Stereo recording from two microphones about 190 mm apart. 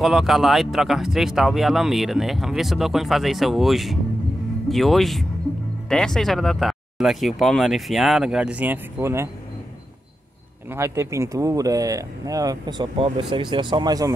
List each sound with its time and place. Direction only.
0.0 s speech: centre (ahead or behind)
10.7 s speech: 15° right (ahead or behind)